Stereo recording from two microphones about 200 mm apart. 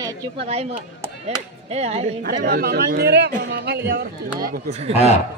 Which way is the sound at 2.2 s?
45° right (ahead or behind).